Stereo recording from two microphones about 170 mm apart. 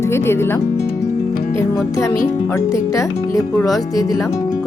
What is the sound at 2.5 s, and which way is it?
Speech, 15° left (ahead or behind).